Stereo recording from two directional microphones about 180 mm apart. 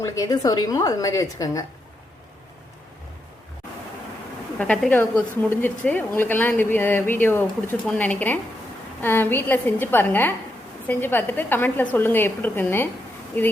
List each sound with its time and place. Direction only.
0.0 s a woman's voice: 20° left (ahead or behind)
4.5 s a woman's voice: 5° left (ahead or behind)